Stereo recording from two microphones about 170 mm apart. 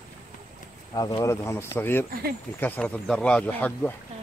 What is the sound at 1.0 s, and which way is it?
Speech, 30° left (ahead or behind).